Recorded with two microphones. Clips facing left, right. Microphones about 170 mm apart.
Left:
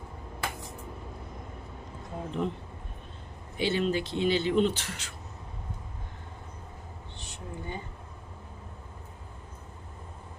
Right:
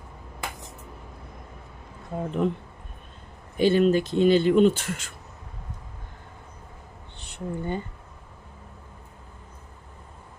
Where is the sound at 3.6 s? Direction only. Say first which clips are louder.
Right 8 dB; 45° right (ahead or behind).